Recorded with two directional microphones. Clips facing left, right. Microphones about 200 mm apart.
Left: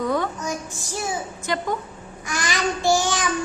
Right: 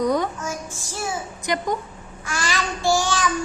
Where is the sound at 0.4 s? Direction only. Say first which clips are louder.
Left 1 dB; 15° left (ahead or behind).